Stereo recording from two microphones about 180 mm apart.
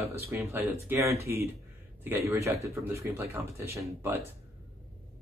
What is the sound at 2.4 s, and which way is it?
Speech, 15° right (ahead or behind).